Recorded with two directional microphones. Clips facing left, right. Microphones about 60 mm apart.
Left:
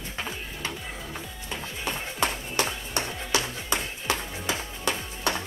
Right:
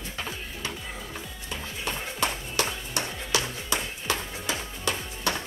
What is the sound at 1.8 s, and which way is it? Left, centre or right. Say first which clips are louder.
Music: left 1 dB; left.